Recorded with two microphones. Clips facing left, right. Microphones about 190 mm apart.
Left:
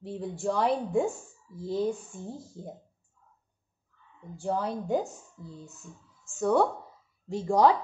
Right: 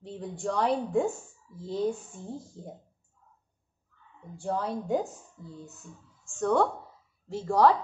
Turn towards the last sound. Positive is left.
turn(degrees=15)  # may be behind; listen again after turning